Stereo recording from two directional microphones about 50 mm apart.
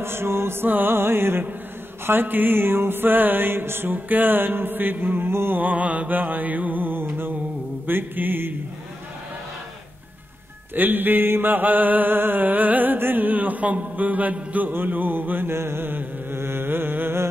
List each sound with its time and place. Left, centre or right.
0.0 s music: right
5.6 s mantra: right
7.8 s music: right
10.7 s mantra: right
14.7 s music: right
15.5 s music: right